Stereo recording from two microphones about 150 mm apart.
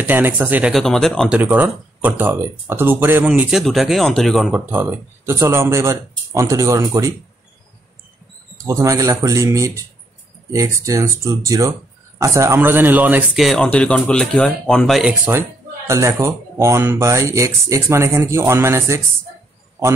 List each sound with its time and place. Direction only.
0.0 s speech: 15° right (ahead or behind)
0.7 s speech: 5° left (ahead or behind)
1.3 s speech: 10° right (ahead or behind)
4.5 s speech: 15° right (ahead or behind)
8.6 s speech: 20° right (ahead or behind)
13.4 s speech: 5° left (ahead or behind)
15.9 s speech: 20° right (ahead or behind)